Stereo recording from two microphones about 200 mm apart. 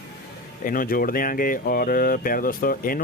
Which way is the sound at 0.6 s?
45° left (ahead or behind).